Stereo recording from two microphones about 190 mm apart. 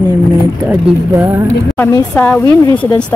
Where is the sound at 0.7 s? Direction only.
10° right (ahead or behind).